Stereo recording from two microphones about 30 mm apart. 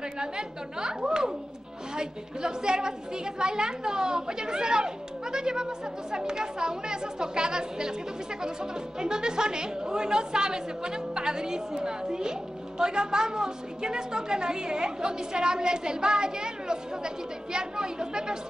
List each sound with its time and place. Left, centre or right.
0.2 s a woman's voice: right
9.0 s a woman's voice: right